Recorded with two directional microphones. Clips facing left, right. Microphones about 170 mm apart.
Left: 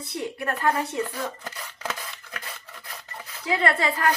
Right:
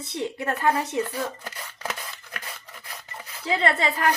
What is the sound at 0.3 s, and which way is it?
Speech, 20° right (ahead or behind).